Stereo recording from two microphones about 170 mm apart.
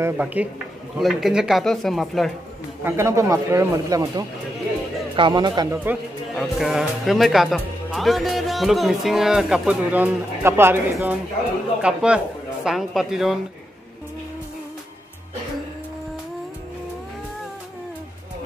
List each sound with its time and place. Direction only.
0.0 s a man's voice: 10° right (ahead or behind)
2.8 s speech: 15° right (ahead or behind)
5.9 s a man's voice: 5° right (ahead or behind)